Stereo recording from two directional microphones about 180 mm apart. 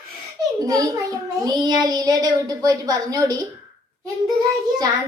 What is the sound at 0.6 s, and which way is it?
A child's voice, 20° right (ahead or behind).